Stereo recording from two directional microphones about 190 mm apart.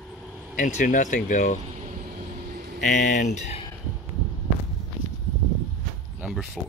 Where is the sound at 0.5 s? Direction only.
40° left (ahead or behind).